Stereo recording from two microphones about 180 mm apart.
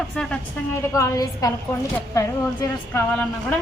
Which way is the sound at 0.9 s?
15° left (ahead or behind).